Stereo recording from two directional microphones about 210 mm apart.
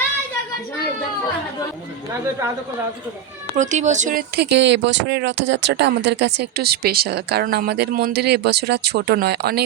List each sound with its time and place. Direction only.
3.5 s speech: 35° right (ahead or behind)
4.4 s speech: 55° right (ahead or behind)